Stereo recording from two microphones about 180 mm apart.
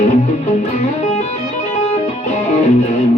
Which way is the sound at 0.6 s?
40° left (ahead or behind).